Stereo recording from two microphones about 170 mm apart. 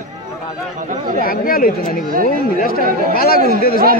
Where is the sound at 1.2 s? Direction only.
60° left (ahead or behind).